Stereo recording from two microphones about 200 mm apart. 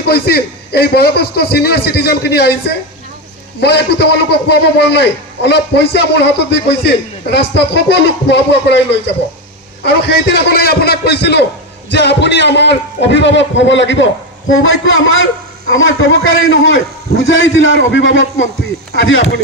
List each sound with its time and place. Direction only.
0.0 s a man's voice: 50° left (ahead or behind)
3.6 s a man's voice: 55° left (ahead or behind); by 19.3 s 70° left (ahead or behind)